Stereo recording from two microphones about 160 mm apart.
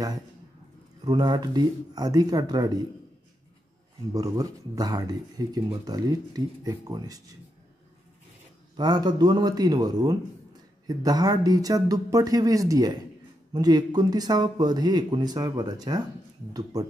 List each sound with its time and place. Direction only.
1.0 s speech: 25° right (ahead or behind)
4.1 s speech: 20° right (ahead or behind)
8.7 s speech: 25° right (ahead or behind)